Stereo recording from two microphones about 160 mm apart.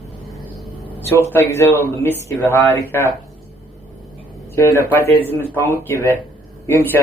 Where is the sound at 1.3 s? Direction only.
15° left (ahead or behind).